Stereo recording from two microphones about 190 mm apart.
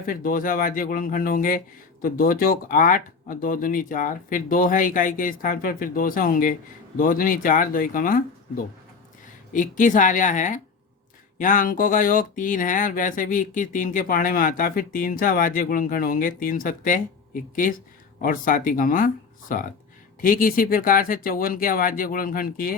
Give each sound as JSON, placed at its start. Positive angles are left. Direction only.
{"t": 0.0, "sound": "speech", "side_deg": 45}